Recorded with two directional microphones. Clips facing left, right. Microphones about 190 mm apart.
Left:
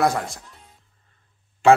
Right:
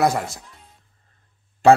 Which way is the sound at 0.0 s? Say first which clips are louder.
Right 1 dB; centre (ahead or behind).